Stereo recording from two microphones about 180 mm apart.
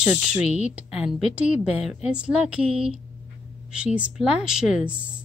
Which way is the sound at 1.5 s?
35° left (ahead or behind).